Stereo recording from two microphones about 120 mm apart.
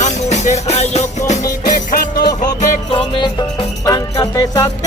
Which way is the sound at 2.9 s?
45° left (ahead or behind).